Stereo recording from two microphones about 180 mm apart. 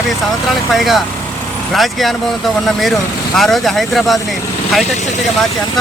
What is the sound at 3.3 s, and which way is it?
Speech, centre (ahead or behind).